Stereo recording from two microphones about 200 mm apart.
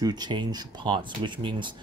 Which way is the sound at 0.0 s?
20° right (ahead or behind).